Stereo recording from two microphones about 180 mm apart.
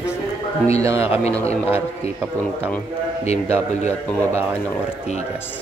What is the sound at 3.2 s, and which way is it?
Speech, 35° left (ahead or behind).